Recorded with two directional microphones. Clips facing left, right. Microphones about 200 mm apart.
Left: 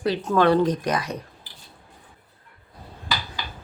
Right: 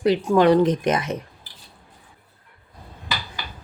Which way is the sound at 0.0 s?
15° right (ahead or behind).